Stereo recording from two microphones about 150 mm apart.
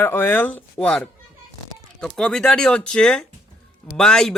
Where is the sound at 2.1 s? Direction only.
5° left (ahead or behind).